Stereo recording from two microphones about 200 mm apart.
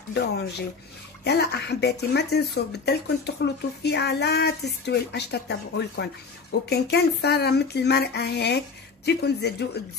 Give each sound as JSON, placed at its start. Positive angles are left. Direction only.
{"t": 0.1, "sound": "speech", "side_deg": 55}